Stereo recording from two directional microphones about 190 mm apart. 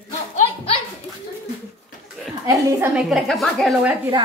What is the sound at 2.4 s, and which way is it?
Speech, 20° right (ahead or behind).